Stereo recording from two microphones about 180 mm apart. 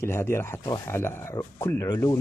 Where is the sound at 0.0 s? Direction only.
15° left (ahead or behind).